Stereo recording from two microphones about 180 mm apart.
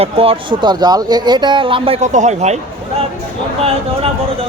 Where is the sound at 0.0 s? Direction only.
30° right (ahead or behind).